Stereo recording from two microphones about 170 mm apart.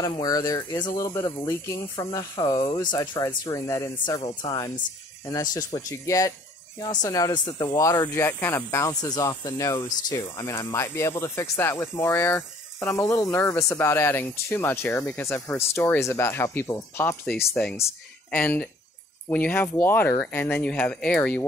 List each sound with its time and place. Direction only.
0.0 s speech: 20° left (ahead or behind); by 21.4 s 5° left (ahead or behind)